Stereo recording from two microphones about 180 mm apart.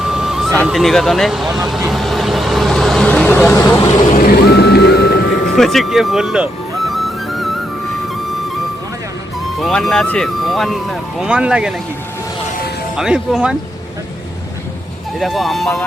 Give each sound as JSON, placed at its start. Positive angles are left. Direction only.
{"t": 0.0, "sound": "music", "side_deg": 0}
{"t": 0.5, "sound": "speech", "side_deg": 5}
{"t": 4.4, "sound": "music", "side_deg": 65}
{"t": 5.5, "sound": "music", "side_deg": 0}
{"t": 9.6, "sound": "speech", "side_deg": 0}
{"t": 13.0, "sound": "speech", "side_deg": -5}
{"t": 15.2, "sound": "speech", "side_deg": 0}